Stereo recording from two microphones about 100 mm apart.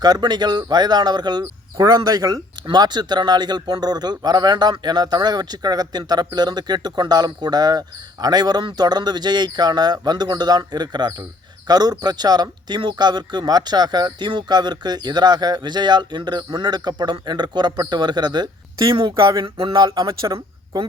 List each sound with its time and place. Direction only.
0.0 s speech: 45° right (ahead or behind)
18.9 s speech: 60° right (ahead or behind)
19.7 s speech: 35° right (ahead or behind)